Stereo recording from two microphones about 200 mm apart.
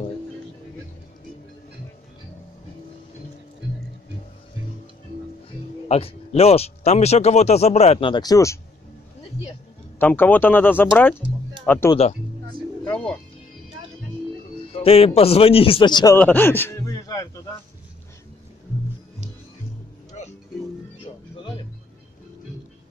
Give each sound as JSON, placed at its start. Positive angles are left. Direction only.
{"t": 5.9, "sound": "speech", "side_deg": 30}
{"t": 9.9, "sound": "speech", "side_deg": 10}
{"t": 11.9, "sound": "speech", "side_deg": 30}
{"t": 12.9, "sound": "speech", "side_deg": 5}
{"t": 14.7, "sound": "a man's voice", "side_deg": 30}
{"t": 16.2, "sound": "a sound", "side_deg": 10}
{"t": 20.2, "sound": "music", "side_deg": 35}
{"t": 21.0, "sound": "music", "side_deg": 25}